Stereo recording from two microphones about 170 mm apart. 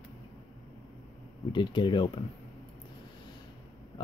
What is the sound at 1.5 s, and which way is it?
Speech, 30° left (ahead or behind).